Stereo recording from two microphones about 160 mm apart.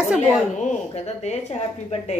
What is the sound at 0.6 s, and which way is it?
Speech, 40° left (ahead or behind).